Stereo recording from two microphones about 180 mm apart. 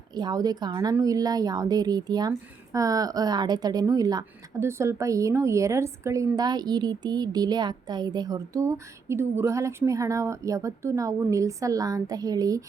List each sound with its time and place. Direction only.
0.1 s a woman's voice: 20° right (ahead or behind)